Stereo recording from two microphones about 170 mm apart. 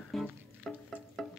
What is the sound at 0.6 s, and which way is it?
Music, centre (ahead or behind).